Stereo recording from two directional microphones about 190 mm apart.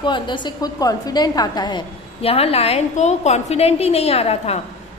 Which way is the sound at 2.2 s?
30° left (ahead or behind).